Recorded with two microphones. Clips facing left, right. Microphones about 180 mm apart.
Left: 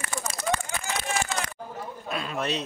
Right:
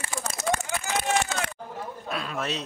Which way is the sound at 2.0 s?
Centre (ahead or behind).